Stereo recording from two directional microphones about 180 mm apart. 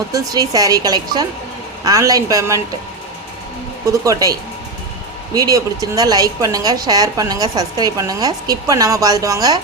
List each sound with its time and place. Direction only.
0.1 s a woman's voice: 20° right (ahead or behind)
4.0 s a woman's voice: 20° right (ahead or behind)